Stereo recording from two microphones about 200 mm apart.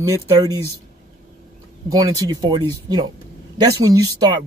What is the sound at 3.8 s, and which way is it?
Speech, 15° right (ahead or behind).